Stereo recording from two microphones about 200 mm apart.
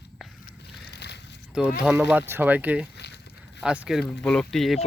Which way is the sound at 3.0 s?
60° left (ahead or behind).